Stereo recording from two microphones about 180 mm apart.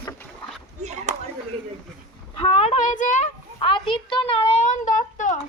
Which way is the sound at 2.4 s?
30° left (ahead or behind).